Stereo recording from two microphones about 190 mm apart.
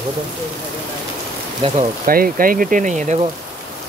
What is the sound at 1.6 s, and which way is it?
Speech, 30° right (ahead or behind).